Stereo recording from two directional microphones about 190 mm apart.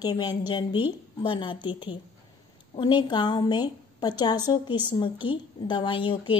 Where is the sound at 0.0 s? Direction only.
25° left (ahead or behind).